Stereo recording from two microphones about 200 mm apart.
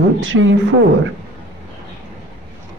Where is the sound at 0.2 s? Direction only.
75° right (ahead or behind).